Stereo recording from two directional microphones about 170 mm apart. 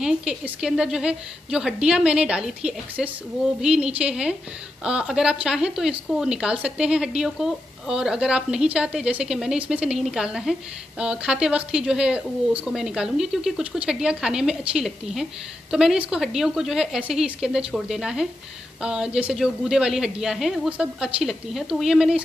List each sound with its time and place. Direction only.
0.0 s speech: 5° right (ahead or behind)